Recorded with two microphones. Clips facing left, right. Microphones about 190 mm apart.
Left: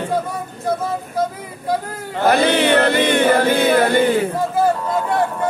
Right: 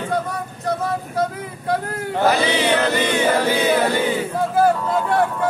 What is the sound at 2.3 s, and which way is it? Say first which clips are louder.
Chant: left 4 dB; 55° left (ahead or behind).